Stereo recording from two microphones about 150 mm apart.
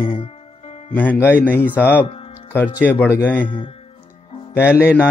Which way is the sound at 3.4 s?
30° left (ahead or behind).